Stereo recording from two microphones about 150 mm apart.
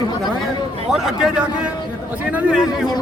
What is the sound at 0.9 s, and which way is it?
Speech, 5° right (ahead or behind).